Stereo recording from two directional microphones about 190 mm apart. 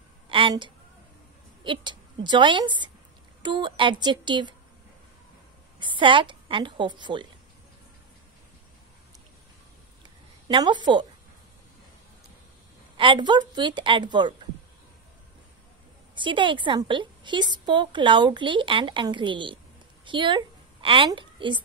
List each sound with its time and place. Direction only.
0.3 s a sound: 25° right (ahead or behind)
1.6 s a woman's voice: 25° right (ahead or behind)
5.8 s a woman's voice: 25° right (ahead or behind)
10.0 s a sound: 25° right (ahead or behind)
12.9 s a woman's voice: 25° right (ahead or behind)
16.2 s a woman's voice: 25° right (ahead or behind)